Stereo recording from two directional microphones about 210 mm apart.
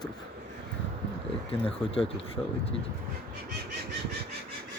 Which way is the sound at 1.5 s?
25° left (ahead or behind).